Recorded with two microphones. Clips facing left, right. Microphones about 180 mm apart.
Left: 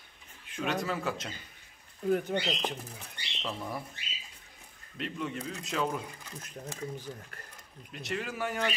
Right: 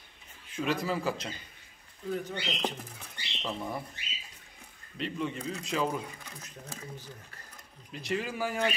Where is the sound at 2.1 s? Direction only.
60° left (ahead or behind).